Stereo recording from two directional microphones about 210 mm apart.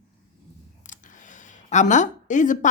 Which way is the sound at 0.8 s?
40° left (ahead or behind).